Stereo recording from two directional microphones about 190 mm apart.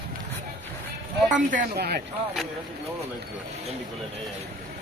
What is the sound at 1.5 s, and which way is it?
Speech, 50° right (ahead or behind).